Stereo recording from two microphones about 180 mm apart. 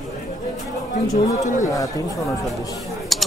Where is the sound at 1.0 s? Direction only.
40° left (ahead or behind).